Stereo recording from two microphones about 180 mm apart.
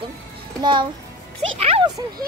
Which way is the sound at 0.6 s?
25° right (ahead or behind).